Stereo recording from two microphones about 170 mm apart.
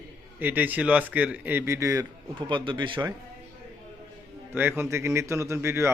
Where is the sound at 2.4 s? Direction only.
30° right (ahead or behind).